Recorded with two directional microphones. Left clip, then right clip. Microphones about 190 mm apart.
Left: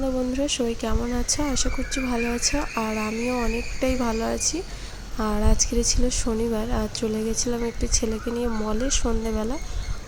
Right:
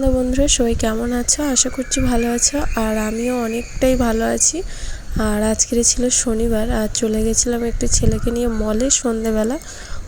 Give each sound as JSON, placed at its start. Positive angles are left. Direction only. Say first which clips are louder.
{"t": 0.0, "sound": "speech", "louder": "right 8 dB", "side_deg": -20}